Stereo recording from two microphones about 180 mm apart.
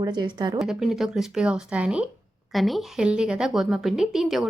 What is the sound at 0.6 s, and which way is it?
A woman's voice, centre (ahead or behind).